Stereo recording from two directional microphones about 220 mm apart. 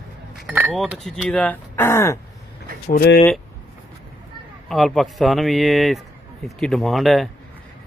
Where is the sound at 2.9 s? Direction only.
45° left (ahead or behind).